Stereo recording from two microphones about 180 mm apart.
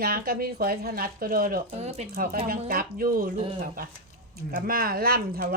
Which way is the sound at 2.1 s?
50° right (ahead or behind).